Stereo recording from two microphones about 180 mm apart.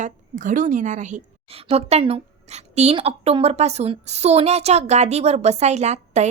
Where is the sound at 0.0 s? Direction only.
45° right (ahead or behind).